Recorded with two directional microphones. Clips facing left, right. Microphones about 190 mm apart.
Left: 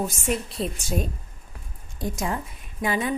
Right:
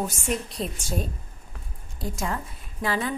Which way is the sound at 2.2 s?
20° left (ahead or behind).